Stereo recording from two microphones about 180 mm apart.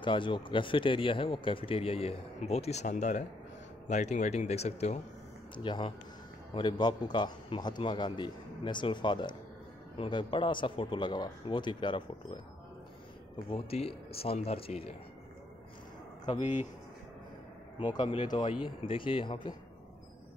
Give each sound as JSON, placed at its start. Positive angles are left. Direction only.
{"t": 0.0, "sound": "speech", "side_deg": 25}
{"t": 13.5, "sound": "speech", "side_deg": 30}
{"t": 16.3, "sound": "speech", "side_deg": -10}
{"t": 17.9, "sound": "speech", "side_deg": 25}